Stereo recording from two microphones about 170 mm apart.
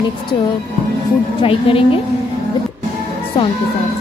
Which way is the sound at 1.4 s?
35° left (ahead or behind).